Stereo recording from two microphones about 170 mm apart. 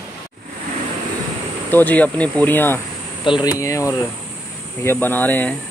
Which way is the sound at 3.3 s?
25° left (ahead or behind).